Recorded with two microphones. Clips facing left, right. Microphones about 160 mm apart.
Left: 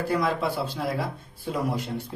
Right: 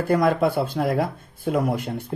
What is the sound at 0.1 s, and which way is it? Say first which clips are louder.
A man's voice: right 8 dB; 50° right (ahead or behind).